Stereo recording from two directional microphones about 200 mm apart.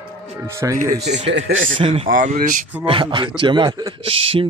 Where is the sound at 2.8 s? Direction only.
25° right (ahead or behind).